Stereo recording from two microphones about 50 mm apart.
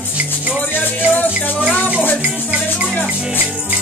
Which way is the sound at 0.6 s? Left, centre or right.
Left.